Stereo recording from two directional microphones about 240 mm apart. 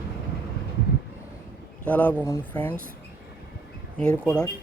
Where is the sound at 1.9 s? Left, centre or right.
Centre.